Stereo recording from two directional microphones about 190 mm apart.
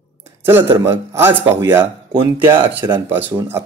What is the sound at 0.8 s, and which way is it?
Speech, 15° right (ahead or behind).